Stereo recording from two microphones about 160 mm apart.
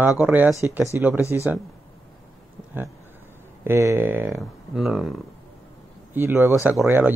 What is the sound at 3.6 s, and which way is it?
Speech, 15° right (ahead or behind).